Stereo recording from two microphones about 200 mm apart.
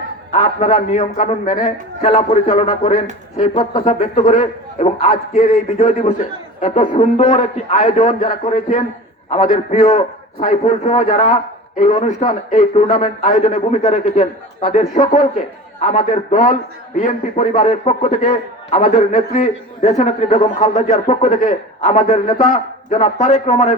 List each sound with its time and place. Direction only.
0.3 s a man's voice: 35° left (ahead or behind)